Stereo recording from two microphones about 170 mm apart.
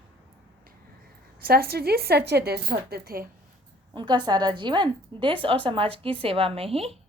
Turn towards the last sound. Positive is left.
turn(degrees=-35)  # may be behind; listen again after turning